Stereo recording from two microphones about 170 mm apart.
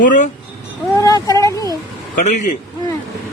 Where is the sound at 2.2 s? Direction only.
45° left (ahead or behind).